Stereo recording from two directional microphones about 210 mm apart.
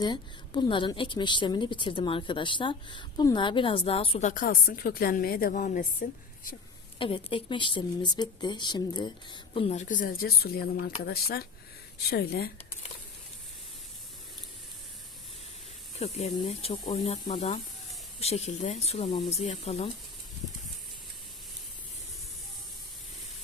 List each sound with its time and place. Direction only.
0.0 s a woman's voice: 20° left (ahead or behind); by 6.2 s 40° left (ahead or behind)
7.0 s a woman's voice: 25° left (ahead or behind); by 12.5 s 50° left (ahead or behind)
16.0 s a woman's voice: 30° left (ahead or behind)